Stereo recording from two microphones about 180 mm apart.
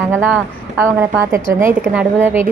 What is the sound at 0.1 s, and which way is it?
Speech, 10° right (ahead or behind).